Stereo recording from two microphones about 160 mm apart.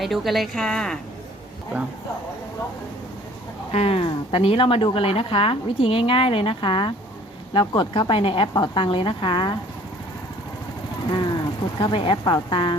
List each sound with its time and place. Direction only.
0.0 s a woman's voice: centre (ahead or behind)
3.7 s a woman's voice: 40° left (ahead or behind)
11.1 s a woman's voice: 25° left (ahead or behind)